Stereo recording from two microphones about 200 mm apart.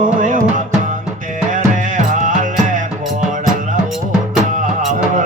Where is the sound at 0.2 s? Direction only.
40° right (ahead or behind).